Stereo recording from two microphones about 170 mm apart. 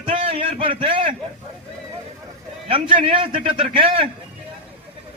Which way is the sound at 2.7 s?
30° right (ahead or behind).